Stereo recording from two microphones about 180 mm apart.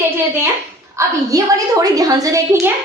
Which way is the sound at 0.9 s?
20° right (ahead or behind).